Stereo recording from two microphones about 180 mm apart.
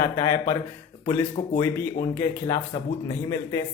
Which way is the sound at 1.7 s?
15° left (ahead or behind).